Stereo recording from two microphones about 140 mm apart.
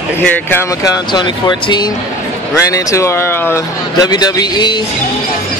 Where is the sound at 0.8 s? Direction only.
30° left (ahead or behind).